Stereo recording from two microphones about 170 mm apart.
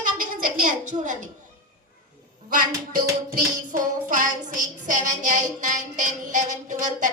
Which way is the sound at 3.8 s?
50° right (ahead or behind).